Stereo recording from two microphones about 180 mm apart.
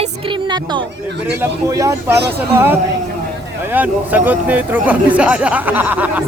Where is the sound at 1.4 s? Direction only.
15° right (ahead or behind).